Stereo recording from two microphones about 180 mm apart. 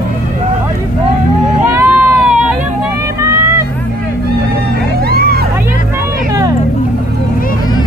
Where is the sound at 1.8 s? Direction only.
5° right (ahead or behind).